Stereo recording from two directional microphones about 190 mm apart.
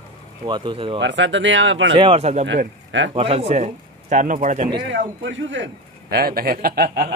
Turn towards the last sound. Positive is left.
turn(degrees=-55)  # may be behind; listen again after turning